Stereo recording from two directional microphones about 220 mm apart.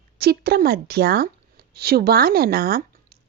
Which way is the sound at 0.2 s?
45° right (ahead or behind).